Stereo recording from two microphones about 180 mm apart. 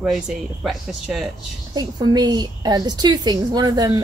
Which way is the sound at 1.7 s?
25° right (ahead or behind).